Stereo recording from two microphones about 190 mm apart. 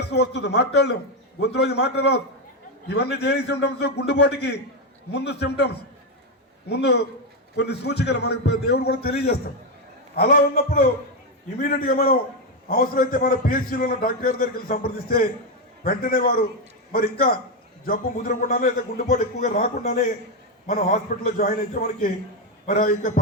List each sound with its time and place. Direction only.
0.0 s a man's voice: 60° left (ahead or behind); by 23.1 s 45° left (ahead or behind)